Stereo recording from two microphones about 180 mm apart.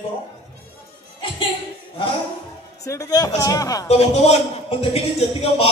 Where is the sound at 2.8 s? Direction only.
20° left (ahead or behind).